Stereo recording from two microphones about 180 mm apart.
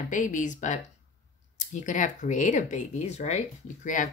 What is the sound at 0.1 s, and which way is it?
Speech, 45° left (ahead or behind).